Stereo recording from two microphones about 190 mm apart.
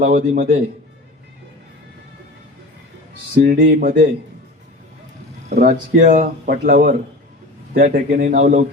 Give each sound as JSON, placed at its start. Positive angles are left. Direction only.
{"t": 0.0, "sound": "speech", "side_deg": -45}
{"t": 3.3, "sound": "speech", "side_deg": -55}
{"t": 5.6, "sound": "speech", "side_deg": -45}